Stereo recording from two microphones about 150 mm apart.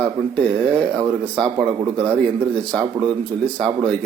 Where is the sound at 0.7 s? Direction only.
20° right (ahead or behind).